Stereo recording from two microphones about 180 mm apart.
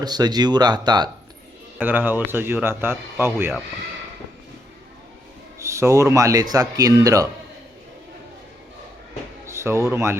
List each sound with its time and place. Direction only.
0.0 s speech: 20° right (ahead or behind)
1.8 s speech: 10° right (ahead or behind)
5.5 s speech: 15° right (ahead or behind)
9.5 s speech: 15° right (ahead or behind)